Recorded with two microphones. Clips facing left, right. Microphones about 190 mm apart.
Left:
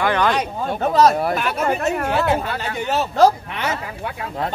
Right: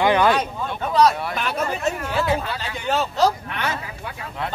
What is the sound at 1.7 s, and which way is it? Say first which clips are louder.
Speech: left 5 dB; 60° left (ahead or behind).